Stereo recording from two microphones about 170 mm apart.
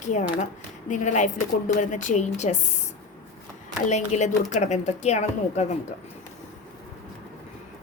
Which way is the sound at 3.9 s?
45° left (ahead or behind).